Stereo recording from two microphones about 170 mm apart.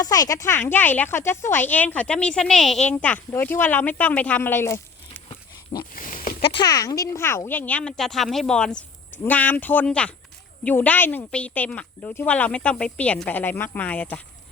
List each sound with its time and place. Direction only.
0.0 s speech: 20° left (ahead or behind)
5.9 s goat: 55° left (ahead or behind)
6.7 s speech: 20° left (ahead or behind)